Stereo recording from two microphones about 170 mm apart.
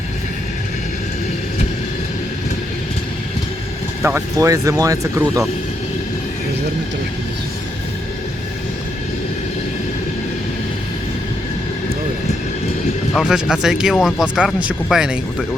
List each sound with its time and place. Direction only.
4.0 s speech: 15° right (ahead or behind)
13.1 s speech: 5° right (ahead or behind)